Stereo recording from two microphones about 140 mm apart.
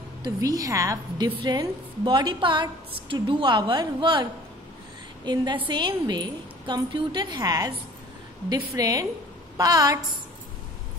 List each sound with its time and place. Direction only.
0.2 s a woman's voice: 25° right (ahead or behind)
8.7 s a woman's voice: 25° right (ahead or behind)